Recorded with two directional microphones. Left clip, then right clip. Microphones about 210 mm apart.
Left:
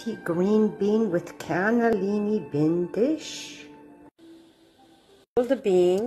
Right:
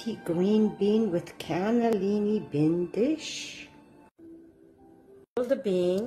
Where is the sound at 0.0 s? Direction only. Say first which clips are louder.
Left 2 dB; 10° left (ahead or behind).